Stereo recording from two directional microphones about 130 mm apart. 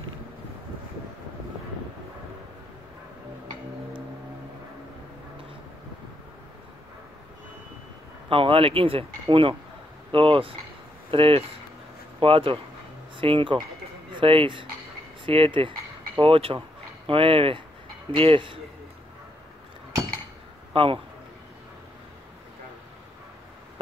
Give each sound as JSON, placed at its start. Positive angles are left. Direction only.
{"t": 8.3, "sound": "speech", "side_deg": -45}
{"t": 20.7, "sound": "a man's voice", "side_deg": -45}